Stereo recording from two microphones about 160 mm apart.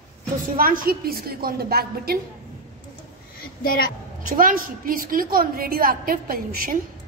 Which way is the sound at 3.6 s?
65° left (ahead or behind).